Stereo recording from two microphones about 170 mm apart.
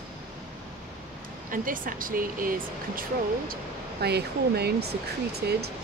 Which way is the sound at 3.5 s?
70° right (ahead or behind).